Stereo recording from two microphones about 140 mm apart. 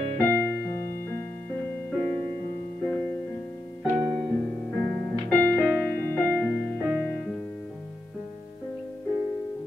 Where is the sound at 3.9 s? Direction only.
Centre (ahead or behind).